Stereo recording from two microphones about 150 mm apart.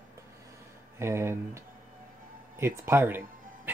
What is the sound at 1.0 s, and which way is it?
Speech, 15° right (ahead or behind).